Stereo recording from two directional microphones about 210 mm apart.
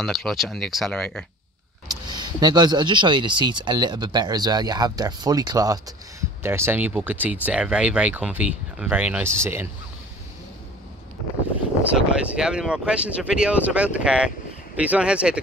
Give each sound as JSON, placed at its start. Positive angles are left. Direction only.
{"t": 0.0, "sound": "speech", "side_deg": 0}
{"t": 1.9, "sound": "speech", "side_deg": -20}
{"t": 11.8, "sound": "speech", "side_deg": -5}